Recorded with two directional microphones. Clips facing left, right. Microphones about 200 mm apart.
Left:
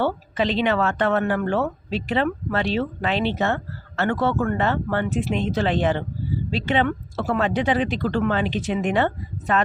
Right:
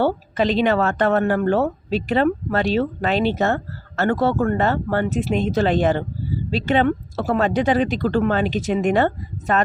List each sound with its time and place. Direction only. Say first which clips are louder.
0.0 s a woman's voice: right 3 dB; 45° right (ahead or behind)